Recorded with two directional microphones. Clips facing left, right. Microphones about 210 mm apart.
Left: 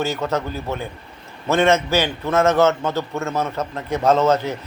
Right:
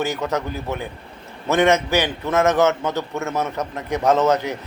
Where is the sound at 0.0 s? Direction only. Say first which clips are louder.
Left 1 dB; 15° right (ahead or behind).